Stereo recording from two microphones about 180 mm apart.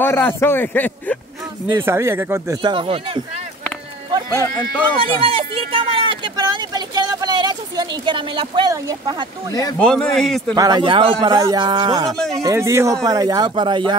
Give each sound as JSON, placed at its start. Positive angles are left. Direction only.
{"t": 0.0, "sound": "a man's voice", "side_deg": 10}
{"t": 1.7, "sound": "speech", "side_deg": -10}
{"t": 4.3, "sound": "a man's voice", "side_deg": 15}
{"t": 5.0, "sound": "vehicle", "side_deg": -30}
{"t": 9.5, "sound": "speech", "side_deg": 20}
{"t": 9.8, "sound": "a man's voice", "side_deg": 5}
{"t": 10.5, "sound": "speech", "side_deg": -20}
{"t": 12.2, "sound": "a man's voice", "side_deg": 0}
{"t": 12.4, "sound": "speech", "side_deg": -15}